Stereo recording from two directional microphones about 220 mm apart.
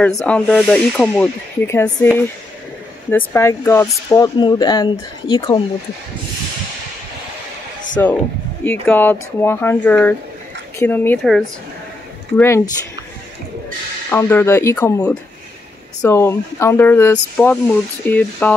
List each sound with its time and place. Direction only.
0.0 s speech: 5° left (ahead or behind)
3.1 s speech: 10° left (ahead or behind)
8.0 s speech: 10° left (ahead or behind)
14.1 s speech: 10° left (ahead or behind)